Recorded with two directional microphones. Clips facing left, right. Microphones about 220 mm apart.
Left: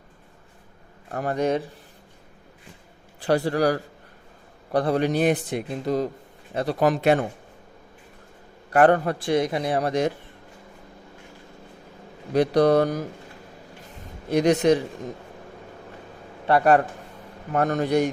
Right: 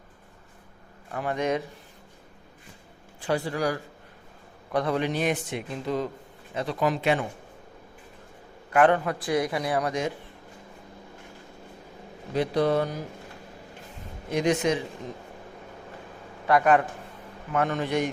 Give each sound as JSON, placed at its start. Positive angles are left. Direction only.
{"t": 1.1, "sound": "speech", "side_deg": 40}
{"t": 3.4, "sound": "speech", "side_deg": 40}
{"t": 8.7, "sound": "a man's voice", "side_deg": 35}
{"t": 12.5, "sound": "speech", "side_deg": 40}
{"t": 14.3, "sound": "speech", "side_deg": 40}
{"t": 16.5, "sound": "speech", "side_deg": 35}